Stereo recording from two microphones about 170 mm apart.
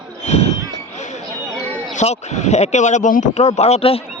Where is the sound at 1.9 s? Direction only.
40° left (ahead or behind).